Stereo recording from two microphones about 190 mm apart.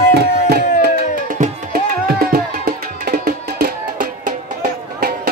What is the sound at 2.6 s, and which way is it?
Music, 50° right (ahead or behind).